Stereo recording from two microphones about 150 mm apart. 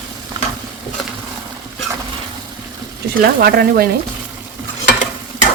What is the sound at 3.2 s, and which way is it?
Speech, 90° right.